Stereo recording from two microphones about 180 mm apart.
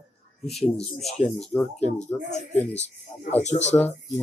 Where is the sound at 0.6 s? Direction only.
35° left (ahead or behind).